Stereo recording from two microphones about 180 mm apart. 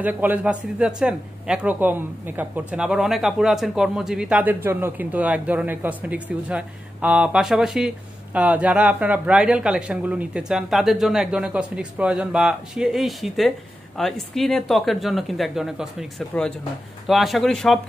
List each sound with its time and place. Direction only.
0.0 s a man's voice: 10° right (ahead or behind)